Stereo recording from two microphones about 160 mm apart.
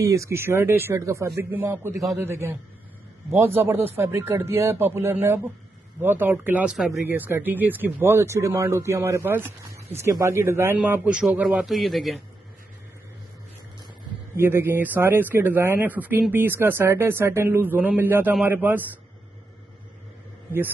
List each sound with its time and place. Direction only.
0.0 s speech: 20° right (ahead or behind); by 12.2 s centre (ahead or behind)
14.3 s speech: 15° right (ahead or behind)